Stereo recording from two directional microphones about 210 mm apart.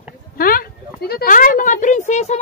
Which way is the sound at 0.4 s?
45° left (ahead or behind).